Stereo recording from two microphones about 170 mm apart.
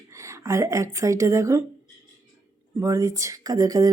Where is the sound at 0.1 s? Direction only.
15° right (ahead or behind).